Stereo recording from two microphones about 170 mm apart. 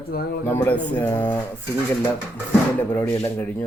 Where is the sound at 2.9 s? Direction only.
15° left (ahead or behind).